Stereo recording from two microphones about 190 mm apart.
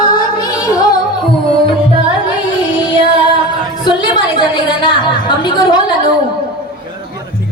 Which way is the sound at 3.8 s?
25° left (ahead or behind).